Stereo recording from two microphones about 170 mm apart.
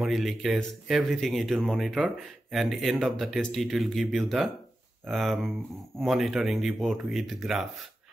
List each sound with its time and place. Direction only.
0.0 s speech: centre (ahead or behind)